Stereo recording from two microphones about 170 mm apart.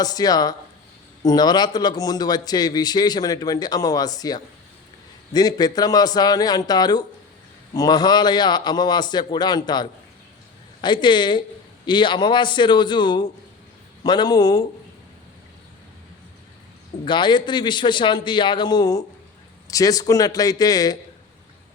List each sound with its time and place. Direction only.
0.0 s a man's voice: 25° left (ahead or behind)
17.1 s a man's voice: 25° left (ahead or behind)